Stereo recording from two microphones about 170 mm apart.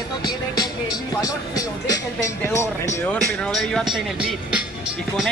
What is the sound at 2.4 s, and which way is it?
Speech, 15° left (ahead or behind).